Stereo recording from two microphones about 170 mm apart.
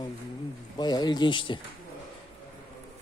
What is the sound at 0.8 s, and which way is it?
Speech, 25° left (ahead or behind).